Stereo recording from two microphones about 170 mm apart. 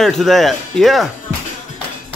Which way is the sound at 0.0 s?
Centre (ahead or behind).